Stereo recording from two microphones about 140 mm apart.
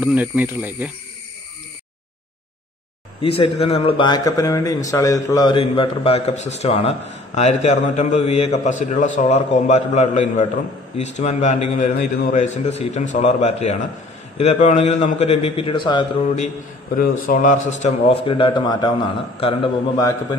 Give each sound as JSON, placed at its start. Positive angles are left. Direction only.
{"t": 0.0, "sound": "speech", "side_deg": -10}
{"t": 3.2, "sound": "a man's voice", "side_deg": 45}
{"t": 16.9, "sound": "a man's voice", "side_deg": 85}
{"t": 18.0, "sound": "a man's voice", "side_deg": 40}
{"t": 20.0, "sound": "a man's voice", "side_deg": 25}